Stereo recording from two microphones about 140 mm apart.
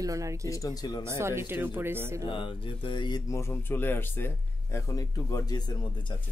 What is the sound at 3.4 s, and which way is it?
Speech, 15° left (ahead or behind).